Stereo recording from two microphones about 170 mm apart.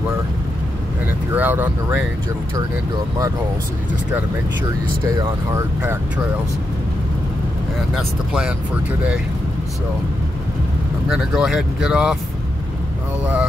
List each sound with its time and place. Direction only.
1.3 s speech: 10° right (ahead or behind)
5.0 s speech: 20° right (ahead or behind)
7.9 s speech: 5° right (ahead or behind)
11.1 s speech: 5° right (ahead or behind)
13.2 s speech: 10° right (ahead or behind)